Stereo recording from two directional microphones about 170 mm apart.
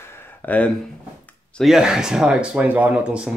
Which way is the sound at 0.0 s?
15° left (ahead or behind).